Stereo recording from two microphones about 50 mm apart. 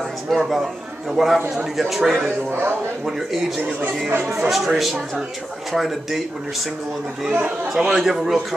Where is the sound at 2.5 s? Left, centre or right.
Right.